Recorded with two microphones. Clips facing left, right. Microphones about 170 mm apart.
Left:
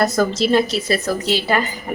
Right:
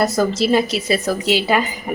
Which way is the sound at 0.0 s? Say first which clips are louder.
Even; 5° right (ahead or behind).